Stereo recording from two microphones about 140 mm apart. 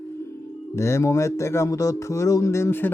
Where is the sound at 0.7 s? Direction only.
20° left (ahead or behind).